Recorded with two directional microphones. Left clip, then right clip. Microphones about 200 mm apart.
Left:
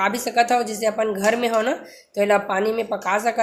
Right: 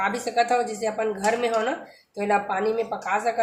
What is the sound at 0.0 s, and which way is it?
A woman's voice, 40° left (ahead or behind).